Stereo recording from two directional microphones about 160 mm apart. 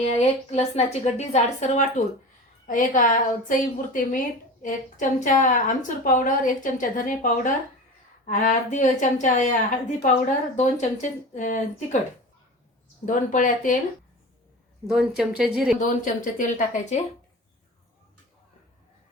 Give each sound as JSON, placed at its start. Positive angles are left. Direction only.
{"t": 0.0, "sound": "a woman's voice", "side_deg": 45}
{"t": 2.6, "sound": "a woman's voice", "side_deg": 55}
{"t": 13.1, "sound": "a woman's voice", "side_deg": 55}
{"t": 14.8, "sound": "speech", "side_deg": 0}
{"t": 15.8, "sound": "a woman's voice", "side_deg": 50}